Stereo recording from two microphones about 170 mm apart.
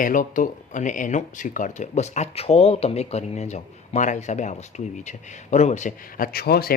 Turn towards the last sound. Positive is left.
turn(degrees=65)  # may be behind; listen again after turning